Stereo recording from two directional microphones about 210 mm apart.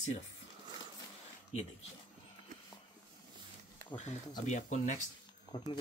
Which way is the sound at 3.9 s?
20° left (ahead or behind).